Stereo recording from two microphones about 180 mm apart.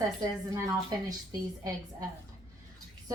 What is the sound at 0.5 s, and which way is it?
A woman's voice, 20° right (ahead or behind).